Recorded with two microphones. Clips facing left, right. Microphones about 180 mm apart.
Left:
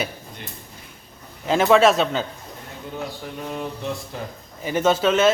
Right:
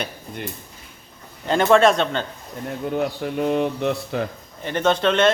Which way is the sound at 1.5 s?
Centre (ahead or behind).